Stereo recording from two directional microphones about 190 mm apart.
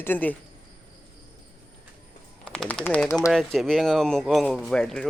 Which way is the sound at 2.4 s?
5° left (ahead or behind).